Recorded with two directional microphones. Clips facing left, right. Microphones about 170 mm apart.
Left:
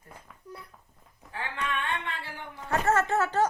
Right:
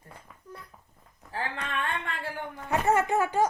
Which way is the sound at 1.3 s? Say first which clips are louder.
Even; 40° right (ahead or behind).